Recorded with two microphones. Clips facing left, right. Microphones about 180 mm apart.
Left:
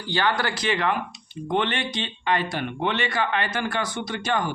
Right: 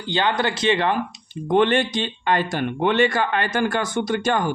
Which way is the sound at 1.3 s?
45° right (ahead or behind).